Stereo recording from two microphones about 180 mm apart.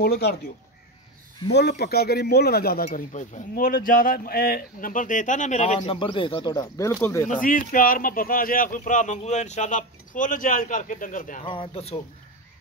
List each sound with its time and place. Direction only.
0.0 s speech: 60° left (ahead or behind)
1.5 s speech: 70° left (ahead or behind)
2.9 s speech: 40° left (ahead or behind)
5.8 s speech: 25° left (ahead or behind)
7.2 s speech: 50° left (ahead or behind)
11.4 s speech: 30° left (ahead or behind)